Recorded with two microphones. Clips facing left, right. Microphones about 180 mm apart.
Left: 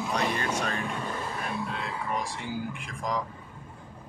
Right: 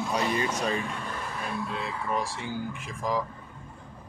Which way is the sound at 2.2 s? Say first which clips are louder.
Right 2 dB; centre (ahead or behind).